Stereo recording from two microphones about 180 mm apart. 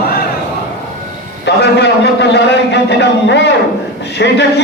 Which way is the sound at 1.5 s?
70° left (ahead or behind).